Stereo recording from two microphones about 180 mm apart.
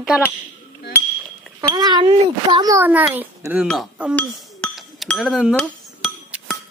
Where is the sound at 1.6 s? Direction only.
25° right (ahead or behind).